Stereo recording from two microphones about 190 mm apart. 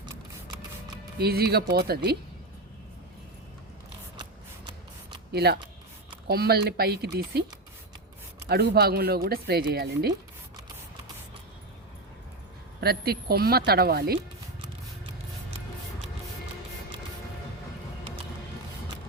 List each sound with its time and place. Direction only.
0.0 s a sound: 20° right (ahead or behind)
1.2 s speech: 55° right (ahead or behind)
5.3 s speech: 60° right (ahead or behind)
8.4 s speech: 55° right (ahead or behind)
12.8 s speech: 55° right (ahead or behind)